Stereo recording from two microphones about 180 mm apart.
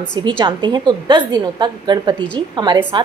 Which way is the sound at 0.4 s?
25° right (ahead or behind).